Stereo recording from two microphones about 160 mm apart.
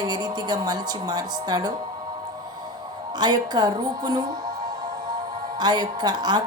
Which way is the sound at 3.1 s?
25° right (ahead or behind).